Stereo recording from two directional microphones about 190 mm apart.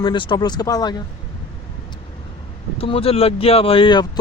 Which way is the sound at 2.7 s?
30° left (ahead or behind).